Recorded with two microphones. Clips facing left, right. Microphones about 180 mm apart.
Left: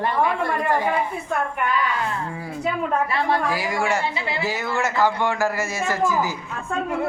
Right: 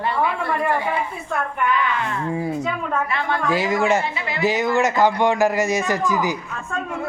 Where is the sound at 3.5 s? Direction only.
20° right (ahead or behind).